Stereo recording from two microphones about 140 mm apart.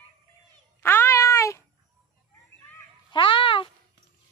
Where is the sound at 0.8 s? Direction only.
15° left (ahead or behind).